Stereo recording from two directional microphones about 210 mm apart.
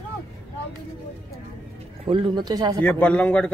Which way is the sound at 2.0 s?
25° right (ahead or behind).